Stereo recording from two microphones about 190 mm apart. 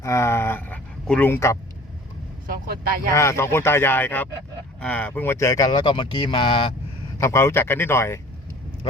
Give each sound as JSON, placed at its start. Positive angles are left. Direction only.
{"t": 0.0, "sound": "speech", "side_deg": 15}
{"t": 2.5, "sound": "speech", "side_deg": -50}
{"t": 3.1, "sound": "speech", "side_deg": 15}
{"t": 7.2, "sound": "speech", "side_deg": 15}